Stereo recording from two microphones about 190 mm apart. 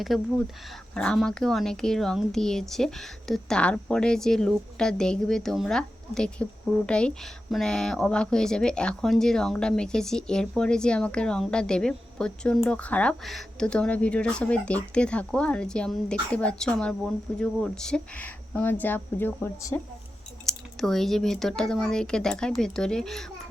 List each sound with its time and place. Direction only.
0.0 s speech: centre (ahead or behind)